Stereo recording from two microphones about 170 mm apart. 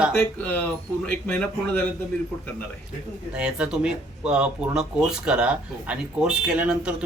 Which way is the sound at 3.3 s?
5° right (ahead or behind).